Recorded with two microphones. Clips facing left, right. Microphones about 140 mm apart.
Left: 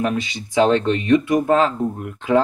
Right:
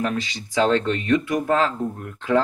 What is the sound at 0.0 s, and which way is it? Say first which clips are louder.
Speech: left 3 dB; 20° left (ahead or behind).